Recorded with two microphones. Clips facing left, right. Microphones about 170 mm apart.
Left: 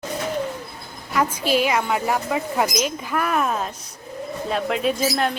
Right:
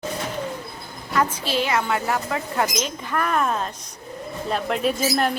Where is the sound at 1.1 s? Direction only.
10° left (ahead or behind).